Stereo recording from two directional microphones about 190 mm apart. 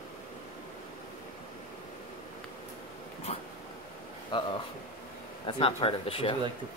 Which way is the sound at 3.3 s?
30° left (ahead or behind).